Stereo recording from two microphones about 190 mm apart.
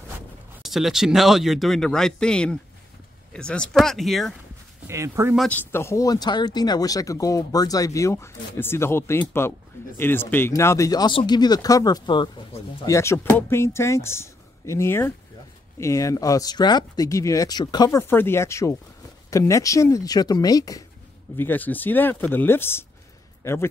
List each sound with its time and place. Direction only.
0.6 s speech: centre (ahead or behind)
4.8 s speech: 15° right (ahead or behind)
5.4 s a man's voice: 10° left (ahead or behind)